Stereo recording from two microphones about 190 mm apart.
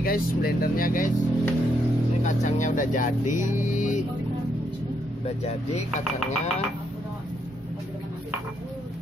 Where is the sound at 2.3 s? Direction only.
40° left (ahead or behind).